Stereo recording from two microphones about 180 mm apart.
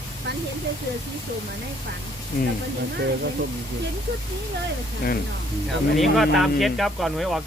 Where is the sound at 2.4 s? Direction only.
50° left (ahead or behind).